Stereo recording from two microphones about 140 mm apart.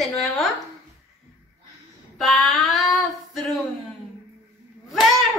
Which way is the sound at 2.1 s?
Centre (ahead or behind).